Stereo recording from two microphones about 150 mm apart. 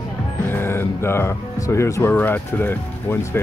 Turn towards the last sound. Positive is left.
turn(degrees=15)  # may be behind; listen again after turning